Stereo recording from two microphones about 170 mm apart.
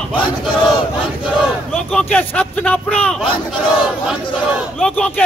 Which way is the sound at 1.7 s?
5° left (ahead or behind).